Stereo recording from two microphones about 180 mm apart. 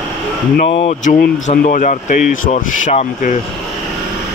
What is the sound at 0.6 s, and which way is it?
Speech, 40° left (ahead or behind).